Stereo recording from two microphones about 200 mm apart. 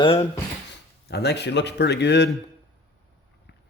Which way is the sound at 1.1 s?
55° left (ahead or behind).